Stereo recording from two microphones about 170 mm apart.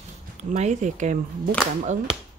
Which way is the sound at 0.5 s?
45° right (ahead or behind).